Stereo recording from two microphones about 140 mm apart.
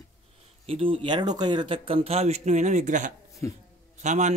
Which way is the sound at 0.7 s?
40° right (ahead or behind).